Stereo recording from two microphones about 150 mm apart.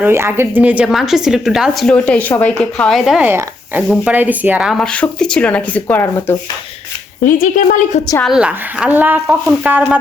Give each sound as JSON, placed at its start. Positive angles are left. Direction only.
{"t": 0.0, "sound": "speech", "side_deg": -15}
{"t": 3.2, "sound": "speech", "side_deg": -15}
{"t": 7.3, "sound": "a woman's voice", "side_deg": 60}
{"t": 8.2, "sound": "speech", "side_deg": -5}